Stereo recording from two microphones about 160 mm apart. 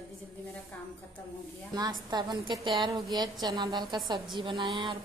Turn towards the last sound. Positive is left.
turn(degrees=-30)  # may be behind; listen again after turning